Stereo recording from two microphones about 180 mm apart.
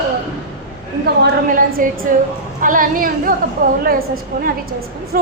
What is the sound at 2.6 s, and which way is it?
Speech, 50° right (ahead or behind).